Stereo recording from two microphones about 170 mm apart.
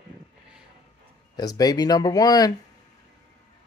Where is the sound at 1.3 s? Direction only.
20° left (ahead or behind).